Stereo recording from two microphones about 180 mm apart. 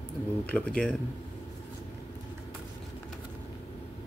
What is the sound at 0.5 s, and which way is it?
Speech, 10° left (ahead or behind).